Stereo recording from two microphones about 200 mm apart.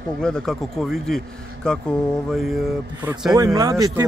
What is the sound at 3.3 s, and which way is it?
Speech, 20° right (ahead or behind).